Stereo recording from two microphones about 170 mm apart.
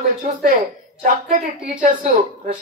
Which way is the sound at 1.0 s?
50° right (ahead or behind).